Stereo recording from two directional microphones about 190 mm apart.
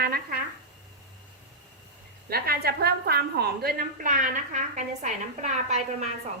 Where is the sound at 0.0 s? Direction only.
55° right (ahead or behind).